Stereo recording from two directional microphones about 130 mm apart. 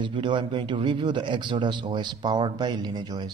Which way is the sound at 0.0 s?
40° right (ahead or behind).